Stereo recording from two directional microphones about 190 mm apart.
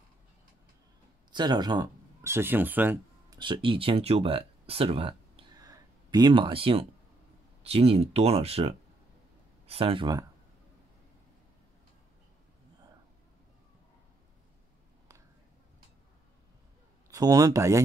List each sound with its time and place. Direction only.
1.3 s speech: 20° right (ahead or behind)
3.3 s speech: 25° right (ahead or behind)
17.1 s speech: 20° right (ahead or behind)